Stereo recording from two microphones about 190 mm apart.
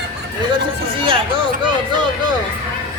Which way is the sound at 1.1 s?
25° right (ahead or behind).